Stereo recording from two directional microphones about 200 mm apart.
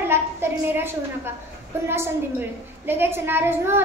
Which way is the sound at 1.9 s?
10° right (ahead or behind).